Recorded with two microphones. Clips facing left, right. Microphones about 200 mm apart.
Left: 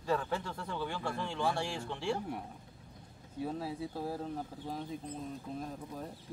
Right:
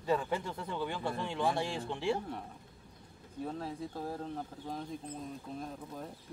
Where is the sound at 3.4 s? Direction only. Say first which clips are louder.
Left 1 dB; 10° left (ahead or behind).